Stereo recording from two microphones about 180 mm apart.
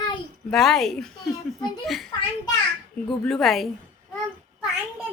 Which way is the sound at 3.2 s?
Centre (ahead or behind).